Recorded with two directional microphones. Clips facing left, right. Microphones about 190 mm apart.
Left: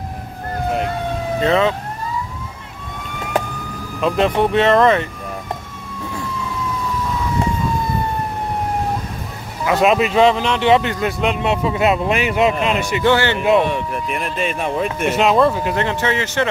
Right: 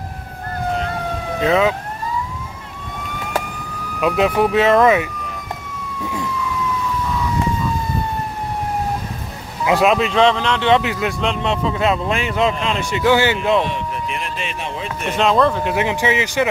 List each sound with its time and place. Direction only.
1.4 s speech: 5° right (ahead or behind)
4.4 s speech: 5° right (ahead or behind)
9.8 s speech: centre (ahead or behind)
10.8 s speech: centre (ahead or behind)
11.1 s speech: 10° left (ahead or behind)
13.1 s speech: 15° right (ahead or behind)
13.4 s speech: 10° left (ahead or behind)
13.7 s speech: 50° left (ahead or behind)
15.0 s speech: 5° left (ahead or behind)
15.7 s speech: 10° right (ahead or behind)